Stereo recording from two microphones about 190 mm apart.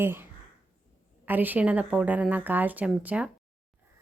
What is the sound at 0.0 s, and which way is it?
Speech, 10° right (ahead or behind).